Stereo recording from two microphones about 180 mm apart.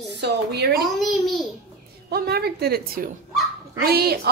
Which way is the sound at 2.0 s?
65° right (ahead or behind).